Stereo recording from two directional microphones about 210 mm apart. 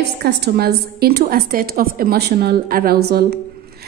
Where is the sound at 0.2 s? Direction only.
50° right (ahead or behind).